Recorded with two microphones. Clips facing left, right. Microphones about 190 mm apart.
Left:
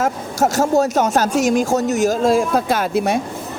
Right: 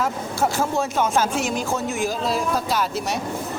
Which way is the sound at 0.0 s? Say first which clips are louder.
Left 4 dB; 45° left (ahead or behind).